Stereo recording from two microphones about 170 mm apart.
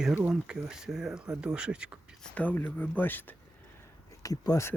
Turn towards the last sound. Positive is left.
turn(degrees=20)  # may be behind; listen again after turning